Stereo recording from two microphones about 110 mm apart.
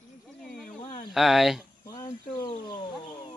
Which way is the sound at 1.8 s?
35° left (ahead or behind).